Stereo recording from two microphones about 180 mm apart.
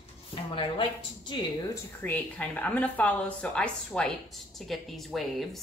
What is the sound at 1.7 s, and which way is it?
Speech, 10° left (ahead or behind).